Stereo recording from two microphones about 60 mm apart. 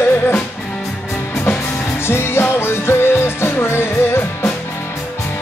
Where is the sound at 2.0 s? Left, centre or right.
Left.